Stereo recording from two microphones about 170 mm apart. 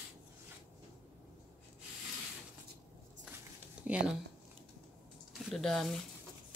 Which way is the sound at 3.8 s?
5° right (ahead or behind).